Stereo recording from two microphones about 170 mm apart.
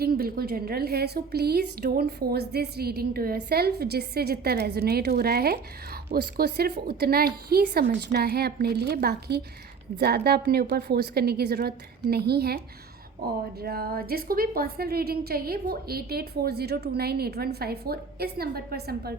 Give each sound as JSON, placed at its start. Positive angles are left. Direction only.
{"t": 0.0, "sound": "a woman's voice", "side_deg": -60}